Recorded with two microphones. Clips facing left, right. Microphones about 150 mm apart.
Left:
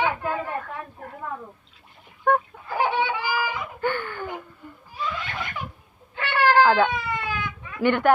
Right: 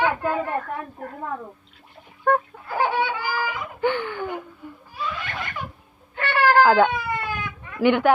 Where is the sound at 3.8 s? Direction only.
15° right (ahead or behind).